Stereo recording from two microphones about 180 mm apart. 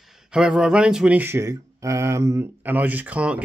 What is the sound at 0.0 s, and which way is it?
Speech, 5° right (ahead or behind).